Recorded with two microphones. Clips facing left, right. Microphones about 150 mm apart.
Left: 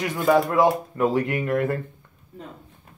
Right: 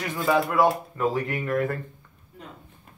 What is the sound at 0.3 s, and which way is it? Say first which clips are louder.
Speech: left 4 dB; centre (ahead or behind).